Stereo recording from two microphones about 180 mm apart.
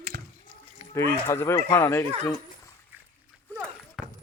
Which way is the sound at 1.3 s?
15° left (ahead or behind).